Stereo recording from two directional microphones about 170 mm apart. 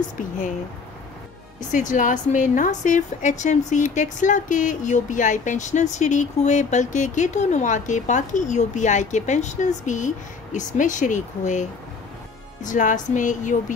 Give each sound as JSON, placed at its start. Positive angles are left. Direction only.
{"t": 1.7, "sound": "a woman's voice", "side_deg": 50}
{"t": 12.6, "sound": "a woman's voice", "side_deg": 50}